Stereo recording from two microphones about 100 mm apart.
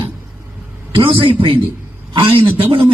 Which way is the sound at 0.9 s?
60° right (ahead or behind).